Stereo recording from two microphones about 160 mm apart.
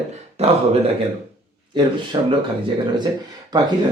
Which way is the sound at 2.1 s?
25° right (ahead or behind).